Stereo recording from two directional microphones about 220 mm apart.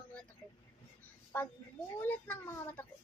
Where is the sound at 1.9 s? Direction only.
10° left (ahead or behind).